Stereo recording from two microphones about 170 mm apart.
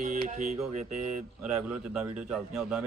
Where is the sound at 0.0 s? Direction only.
45° right (ahead or behind).